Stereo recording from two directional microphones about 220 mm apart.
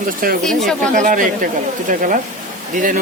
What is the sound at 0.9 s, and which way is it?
Speech, 35° right (ahead or behind).